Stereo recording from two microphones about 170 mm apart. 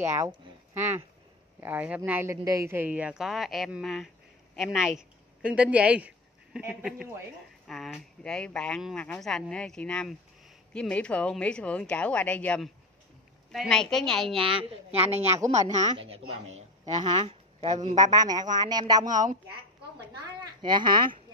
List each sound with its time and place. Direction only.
0.0 s a woman's voice: 15° right (ahead or behind)
14.7 s a woman's voice: 40° right (ahead or behind)
15.3 s speech: 20° right (ahead or behind)
16.0 s a woman's voice: 35° right (ahead or behind)
20.6 s speech: 25° right (ahead or behind)